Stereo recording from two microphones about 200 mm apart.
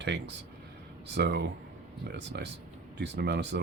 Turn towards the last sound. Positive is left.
turn(degrees=-60)  # may be behind; listen again after turning